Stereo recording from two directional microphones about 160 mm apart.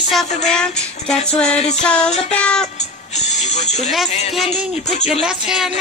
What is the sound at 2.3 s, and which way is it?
Speech, 10° left (ahead or behind).